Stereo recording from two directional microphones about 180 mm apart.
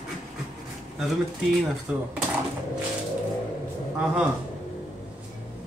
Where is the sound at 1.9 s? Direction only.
5° right (ahead or behind).